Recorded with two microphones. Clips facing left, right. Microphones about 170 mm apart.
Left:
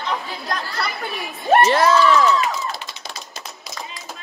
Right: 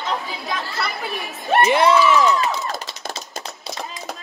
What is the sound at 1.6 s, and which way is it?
Speech, 20° right (ahead or behind).